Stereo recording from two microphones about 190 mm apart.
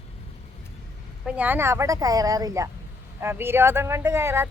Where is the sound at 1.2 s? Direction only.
5° right (ahead or behind).